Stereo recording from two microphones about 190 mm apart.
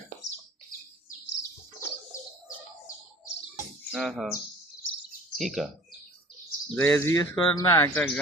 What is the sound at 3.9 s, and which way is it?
Speech, centre (ahead or behind).